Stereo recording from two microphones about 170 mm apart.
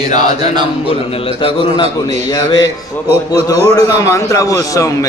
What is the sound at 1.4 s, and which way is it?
Speech, 30° left (ahead or behind).